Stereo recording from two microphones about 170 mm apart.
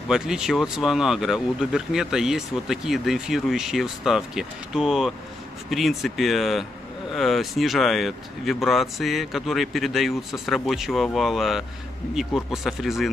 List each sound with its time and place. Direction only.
0.1 s speech: 5° right (ahead or behind)